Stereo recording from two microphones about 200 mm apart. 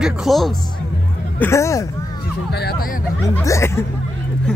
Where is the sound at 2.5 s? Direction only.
50° left (ahead or behind).